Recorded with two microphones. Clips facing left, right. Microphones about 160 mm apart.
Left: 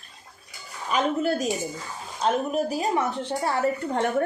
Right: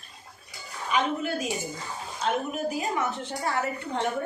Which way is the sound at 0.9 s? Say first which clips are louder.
Left 3 dB; 40° left (ahead or behind).